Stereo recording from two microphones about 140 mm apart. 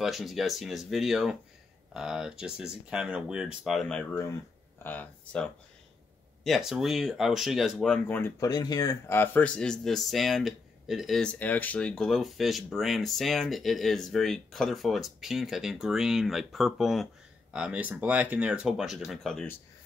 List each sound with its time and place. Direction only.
0.0 s speech: centre (ahead or behind)
6.4 s speech: centre (ahead or behind)
8.2 s speech: 25° left (ahead or behind)
9.0 s speech: 15° left (ahead or behind)